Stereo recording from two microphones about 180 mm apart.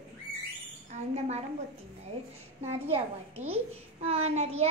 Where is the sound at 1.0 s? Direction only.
40° right (ahead or behind).